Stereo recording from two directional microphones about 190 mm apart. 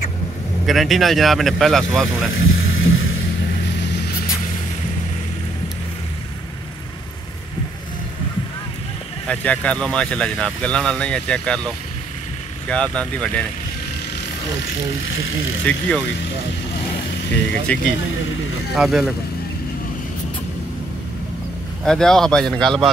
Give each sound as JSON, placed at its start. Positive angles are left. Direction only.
{"t": 0.7, "sound": "speech", "side_deg": 0}
{"t": 2.3, "sound": "vehicle", "side_deg": 90}
{"t": 9.3, "sound": "speech", "side_deg": 5}
{"t": 15.7, "sound": "speech", "side_deg": 5}
{"t": 17.7, "sound": "speech", "side_deg": 5}
{"t": 21.8, "sound": "speech", "side_deg": 5}